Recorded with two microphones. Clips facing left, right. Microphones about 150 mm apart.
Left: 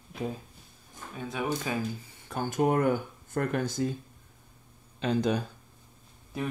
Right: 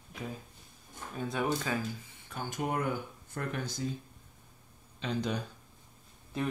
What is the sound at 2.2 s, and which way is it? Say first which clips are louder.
Speech: left 9 dB; 50° left (ahead or behind).